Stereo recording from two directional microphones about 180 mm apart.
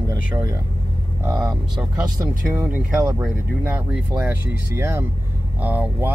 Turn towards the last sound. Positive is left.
turn(degrees=-10)  # may be behind; listen again after turning